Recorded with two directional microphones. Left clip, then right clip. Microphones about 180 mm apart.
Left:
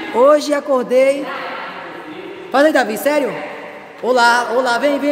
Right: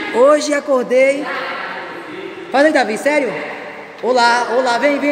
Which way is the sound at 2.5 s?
20° left (ahead or behind).